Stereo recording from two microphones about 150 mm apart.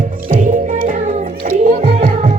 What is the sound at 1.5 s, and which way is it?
Music, 55° right (ahead or behind).